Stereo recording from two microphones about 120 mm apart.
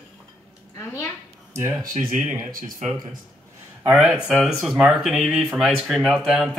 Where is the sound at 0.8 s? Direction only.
25° left (ahead or behind).